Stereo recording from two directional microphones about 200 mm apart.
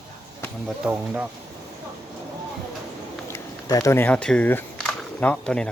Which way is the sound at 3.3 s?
15° left (ahead or behind).